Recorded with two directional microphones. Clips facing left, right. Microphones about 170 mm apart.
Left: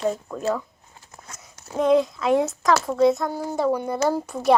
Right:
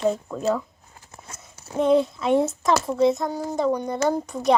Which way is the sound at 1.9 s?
30° right (ahead or behind).